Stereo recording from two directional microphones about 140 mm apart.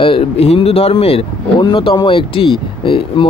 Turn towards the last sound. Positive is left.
turn(degrees=40)  # may be behind; listen again after turning